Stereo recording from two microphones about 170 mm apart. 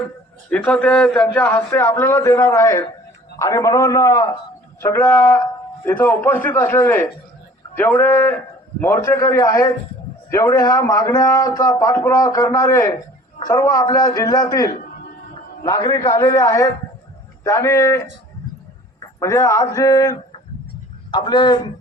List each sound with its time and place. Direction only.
0.5 s a man's voice: 10° left (ahead or behind)
19.2 s a man's voice: 20° left (ahead or behind)